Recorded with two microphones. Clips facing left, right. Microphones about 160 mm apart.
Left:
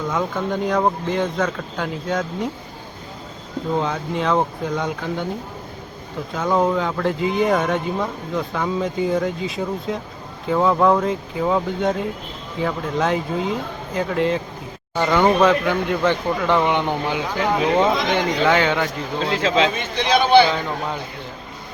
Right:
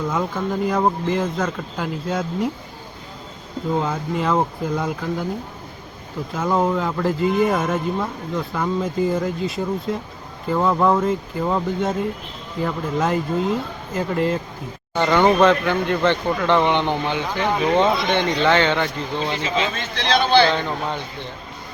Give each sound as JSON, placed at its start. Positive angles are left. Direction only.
{"t": 0.1, "sound": "speech", "side_deg": -5}
{"t": 3.8, "sound": "speech", "side_deg": -5}
{"t": 6.3, "sound": "speech", "side_deg": -5}
{"t": 19.4, "sound": "speech", "side_deg": 90}
{"t": 19.7, "sound": "speech", "side_deg": 10}